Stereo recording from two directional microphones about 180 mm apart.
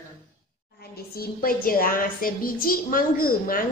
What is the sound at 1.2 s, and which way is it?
A woman's voice, 55° left (ahead or behind).